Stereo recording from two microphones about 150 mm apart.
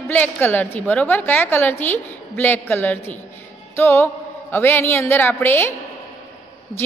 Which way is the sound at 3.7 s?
15° left (ahead or behind).